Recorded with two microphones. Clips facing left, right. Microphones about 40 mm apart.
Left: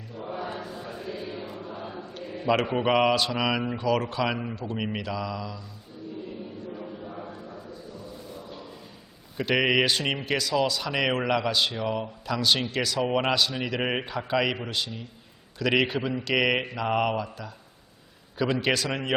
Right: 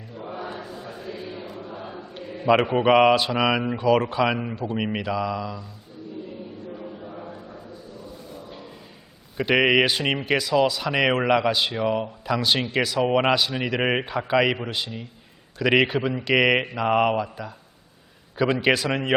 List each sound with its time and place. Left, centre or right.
0.3 s chant: centre
2.6 s speech: centre
6.7 s a sound: centre
9.4 s speech: centre